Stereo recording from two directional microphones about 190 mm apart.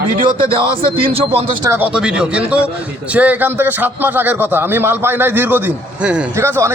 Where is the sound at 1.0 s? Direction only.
30° right (ahead or behind).